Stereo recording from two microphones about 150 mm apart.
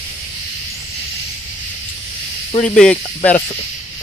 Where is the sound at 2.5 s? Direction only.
55° left (ahead or behind).